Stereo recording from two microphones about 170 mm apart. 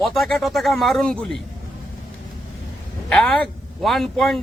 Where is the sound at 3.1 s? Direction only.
5° left (ahead or behind).